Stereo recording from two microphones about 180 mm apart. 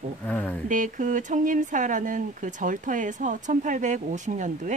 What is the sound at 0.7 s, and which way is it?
A woman's voice, 45° right (ahead or behind).